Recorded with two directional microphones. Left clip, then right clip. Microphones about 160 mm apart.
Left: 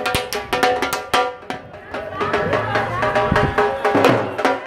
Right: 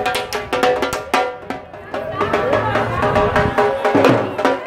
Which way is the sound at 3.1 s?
15° left (ahead or behind).